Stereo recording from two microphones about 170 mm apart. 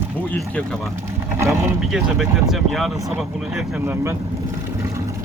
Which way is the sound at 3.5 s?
15° right (ahead or behind).